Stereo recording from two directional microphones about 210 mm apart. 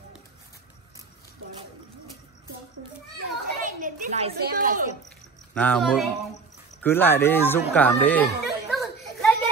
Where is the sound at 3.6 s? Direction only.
35° right (ahead or behind).